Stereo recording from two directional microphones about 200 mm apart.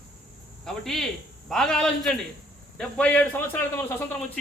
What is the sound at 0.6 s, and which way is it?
Speech, centre (ahead or behind).